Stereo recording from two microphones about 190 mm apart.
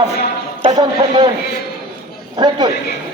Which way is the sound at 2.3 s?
20° right (ahead or behind).